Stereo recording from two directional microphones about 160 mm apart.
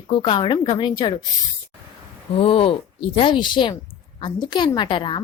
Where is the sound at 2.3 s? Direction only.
35° left (ahead or behind).